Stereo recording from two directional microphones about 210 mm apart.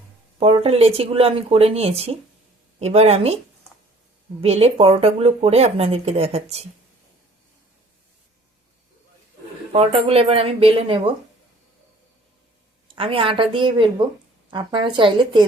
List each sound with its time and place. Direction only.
0.3 s speech: 25° right (ahead or behind)
4.4 s speech: 30° right (ahead or behind)
9.7 s speech: 30° right (ahead or behind)
13.0 s speech: 25° right (ahead or behind)